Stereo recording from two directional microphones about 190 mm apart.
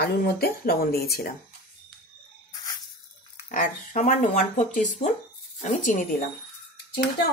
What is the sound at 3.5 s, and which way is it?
Speech, 45° left (ahead or behind).